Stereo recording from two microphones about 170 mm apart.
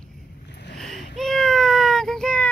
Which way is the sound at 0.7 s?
Centre (ahead or behind).